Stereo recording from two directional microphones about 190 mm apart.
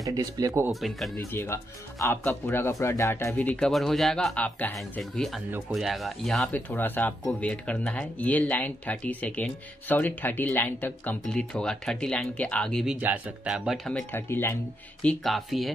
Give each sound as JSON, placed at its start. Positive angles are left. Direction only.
{"t": 0.0, "sound": "speech", "side_deg": -20}
{"t": 0.7, "sound": "speech", "side_deg": 0}
{"t": 1.3, "sound": "speech", "side_deg": 15}